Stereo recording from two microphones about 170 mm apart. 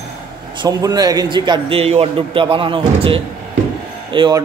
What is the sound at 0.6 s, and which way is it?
A man's voice, 25° right (ahead or behind).